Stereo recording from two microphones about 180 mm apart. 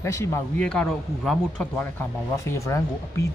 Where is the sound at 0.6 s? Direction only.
5° left (ahead or behind).